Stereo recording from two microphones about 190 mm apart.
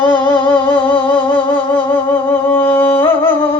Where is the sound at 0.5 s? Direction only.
25° left (ahead or behind).